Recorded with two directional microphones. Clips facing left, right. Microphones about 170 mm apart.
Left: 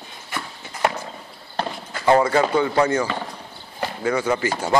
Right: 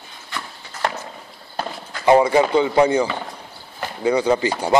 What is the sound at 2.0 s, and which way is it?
Speech, 15° right (ahead or behind).